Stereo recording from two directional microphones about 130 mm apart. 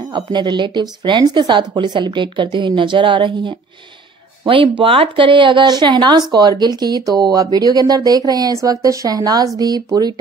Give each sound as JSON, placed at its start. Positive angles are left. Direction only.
{"t": 0.1, "sound": "speech", "side_deg": -35}